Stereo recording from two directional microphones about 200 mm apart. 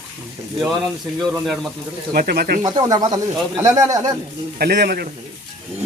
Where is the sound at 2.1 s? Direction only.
50° right (ahead or behind).